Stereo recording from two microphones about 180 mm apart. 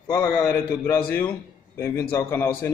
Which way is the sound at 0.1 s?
10° left (ahead or behind).